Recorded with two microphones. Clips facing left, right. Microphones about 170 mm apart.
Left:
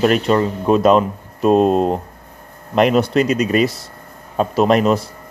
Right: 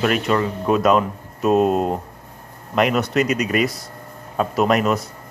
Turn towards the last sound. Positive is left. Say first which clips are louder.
# left 4 dB
turn(degrees=30)  # may be behind; listen again after turning